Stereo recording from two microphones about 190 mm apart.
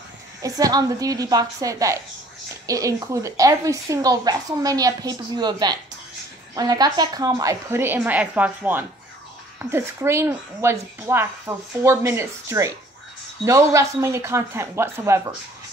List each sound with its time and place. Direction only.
0.4 s speech: 20° right (ahead or behind)